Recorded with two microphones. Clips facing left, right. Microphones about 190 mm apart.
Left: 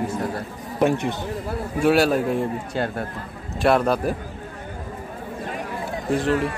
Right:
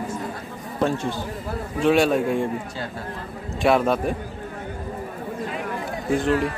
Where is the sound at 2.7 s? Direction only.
60° left (ahead or behind).